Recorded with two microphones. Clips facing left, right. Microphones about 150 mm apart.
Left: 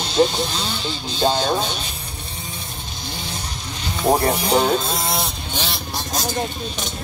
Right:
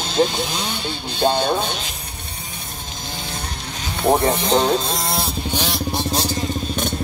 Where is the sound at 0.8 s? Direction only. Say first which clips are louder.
Right 1 dB; 60° right (ahead or behind).